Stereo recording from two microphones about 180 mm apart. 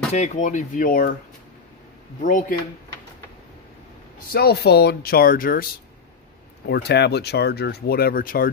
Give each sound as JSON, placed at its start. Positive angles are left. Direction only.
{"t": 0.1, "sound": "speech", "side_deg": 40}
{"t": 2.2, "sound": "speech", "side_deg": 45}
{"t": 4.3, "sound": "speech", "side_deg": 60}
{"t": 6.6, "sound": "speech", "side_deg": 70}